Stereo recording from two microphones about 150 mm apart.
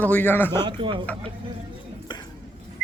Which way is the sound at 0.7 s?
35° right (ahead or behind).